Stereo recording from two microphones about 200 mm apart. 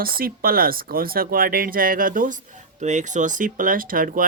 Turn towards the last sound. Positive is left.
turn(degrees=-45)  # may be behind; listen again after turning